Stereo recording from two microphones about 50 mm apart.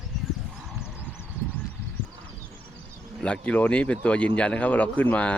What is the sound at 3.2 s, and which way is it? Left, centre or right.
Speech, left.